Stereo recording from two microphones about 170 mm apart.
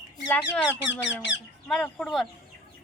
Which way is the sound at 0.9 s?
90° left.